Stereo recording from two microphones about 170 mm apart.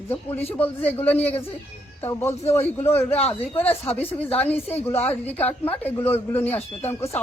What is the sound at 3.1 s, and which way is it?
Speech, 35° left (ahead or behind).